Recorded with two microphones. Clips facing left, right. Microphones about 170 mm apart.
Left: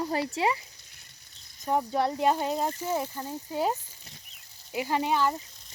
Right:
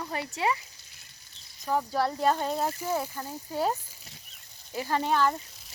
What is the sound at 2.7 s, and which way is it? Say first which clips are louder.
Speech: even; 10° right (ahead or behind).